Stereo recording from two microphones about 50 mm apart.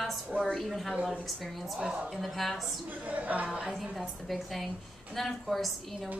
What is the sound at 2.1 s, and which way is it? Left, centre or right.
Speech, centre.